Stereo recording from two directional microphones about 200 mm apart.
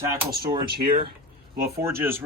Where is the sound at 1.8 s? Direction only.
15° right (ahead or behind).